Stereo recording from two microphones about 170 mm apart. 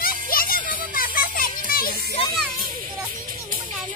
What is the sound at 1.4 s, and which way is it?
Children playing, 55° left (ahead or behind).